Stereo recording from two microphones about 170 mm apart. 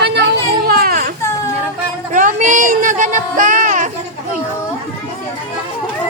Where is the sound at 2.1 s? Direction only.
50° right (ahead or behind).